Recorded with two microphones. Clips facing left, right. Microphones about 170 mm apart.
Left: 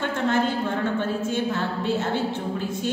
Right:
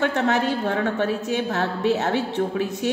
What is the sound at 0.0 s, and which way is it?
A woman's voice, 65° right (ahead or behind).